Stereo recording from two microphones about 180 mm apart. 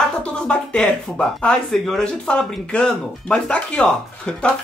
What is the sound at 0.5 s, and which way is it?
A man's voice, 5° left (ahead or behind).